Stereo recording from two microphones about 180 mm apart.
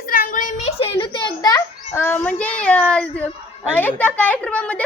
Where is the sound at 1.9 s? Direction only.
10° left (ahead or behind).